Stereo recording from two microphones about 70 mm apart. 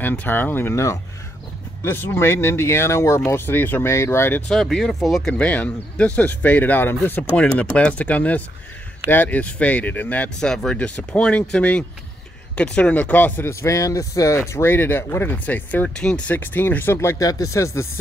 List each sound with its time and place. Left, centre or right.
0.0 s speech: left
3.8 s speech: left
4.5 s speech: centre
5.2 s speech: centre
7.4 s speech: centre
10.4 s speech: centre
13.5 s speech: left
14.7 s speech: left
15.3 s speech: left
16.1 s speech: centre
16.3 s speech: left
17.2 s speech: left